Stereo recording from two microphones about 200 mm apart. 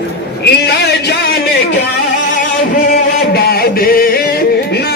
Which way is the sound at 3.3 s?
50° left (ahead or behind).